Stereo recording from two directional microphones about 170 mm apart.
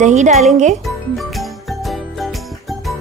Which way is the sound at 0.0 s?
45° right (ahead or behind).